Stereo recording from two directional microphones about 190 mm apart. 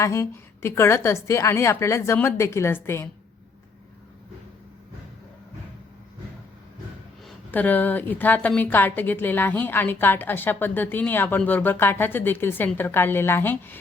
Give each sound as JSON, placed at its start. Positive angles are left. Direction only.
{"t": 0.0, "sound": "a woman's voice", "side_deg": 15}
{"t": 7.3, "sound": "a woman's voice", "side_deg": 10}